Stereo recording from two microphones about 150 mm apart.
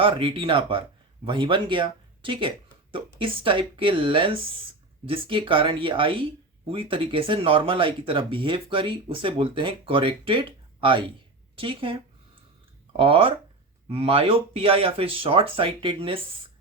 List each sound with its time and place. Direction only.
0.0 s speech: 35° right (ahead or behind)